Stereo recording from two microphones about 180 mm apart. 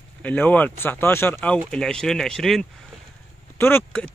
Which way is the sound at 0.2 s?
10° left (ahead or behind).